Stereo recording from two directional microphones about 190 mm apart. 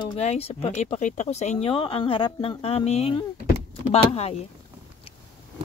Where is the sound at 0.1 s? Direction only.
35° left (ahead or behind).